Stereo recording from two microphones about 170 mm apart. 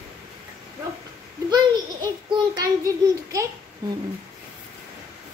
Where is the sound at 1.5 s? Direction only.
25° right (ahead or behind).